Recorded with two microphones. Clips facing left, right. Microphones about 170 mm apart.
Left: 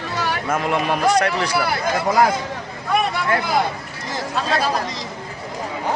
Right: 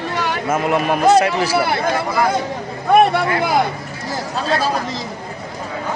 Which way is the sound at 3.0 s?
60° right (ahead or behind).